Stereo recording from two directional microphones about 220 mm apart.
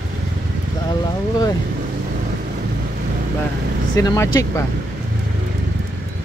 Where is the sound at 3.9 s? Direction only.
15° left (ahead or behind).